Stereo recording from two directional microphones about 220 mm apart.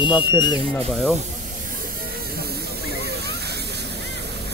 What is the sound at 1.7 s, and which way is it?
Hiss, 40° right (ahead or behind).